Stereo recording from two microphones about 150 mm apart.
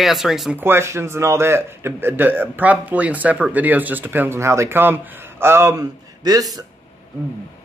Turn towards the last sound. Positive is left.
turn(degrees=-25)  # may be behind; listen again after turning